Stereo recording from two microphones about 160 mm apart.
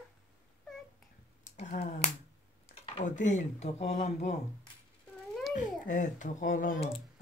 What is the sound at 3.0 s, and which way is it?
Speech, 50° left (ahead or behind).